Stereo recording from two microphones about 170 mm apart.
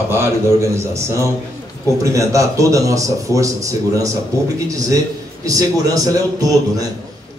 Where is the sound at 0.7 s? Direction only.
15° right (ahead or behind).